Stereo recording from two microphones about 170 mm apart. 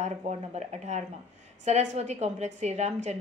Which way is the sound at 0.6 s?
40° right (ahead or behind).